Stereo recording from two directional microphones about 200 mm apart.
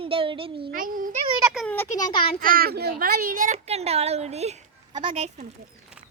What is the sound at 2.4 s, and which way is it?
A child's voice, 45° right (ahead or behind).